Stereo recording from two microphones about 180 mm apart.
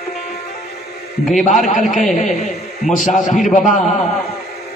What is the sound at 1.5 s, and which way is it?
A man's voice, 45° left (ahead or behind).